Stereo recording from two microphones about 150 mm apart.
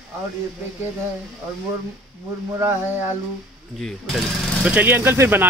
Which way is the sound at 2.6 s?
15° right (ahead or behind).